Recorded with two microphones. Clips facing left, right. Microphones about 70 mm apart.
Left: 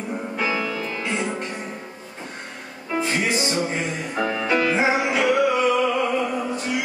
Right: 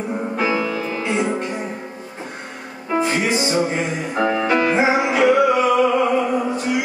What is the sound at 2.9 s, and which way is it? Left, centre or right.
Music, centre.